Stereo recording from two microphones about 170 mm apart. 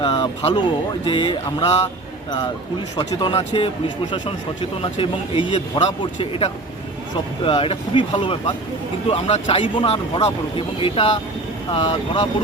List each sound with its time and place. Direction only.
0.0 s a sound: 30° left (ahead or behind)
1.0 s speech: 30° left (ahead or behind)
2.9 s speech: 25° left (ahead or behind)